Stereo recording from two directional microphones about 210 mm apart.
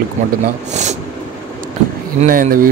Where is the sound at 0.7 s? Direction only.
35° right (ahead or behind).